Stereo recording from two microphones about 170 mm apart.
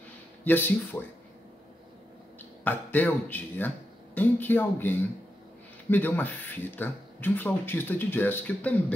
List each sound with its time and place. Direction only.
0.5 s speech: 10° left (ahead or behind)
2.6 s speech: 10° left (ahead or behind)